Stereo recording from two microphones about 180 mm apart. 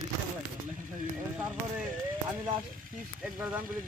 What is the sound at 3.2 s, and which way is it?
Speech, 10° right (ahead or behind).